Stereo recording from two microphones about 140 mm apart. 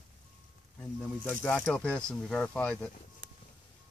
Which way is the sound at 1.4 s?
10° left (ahead or behind).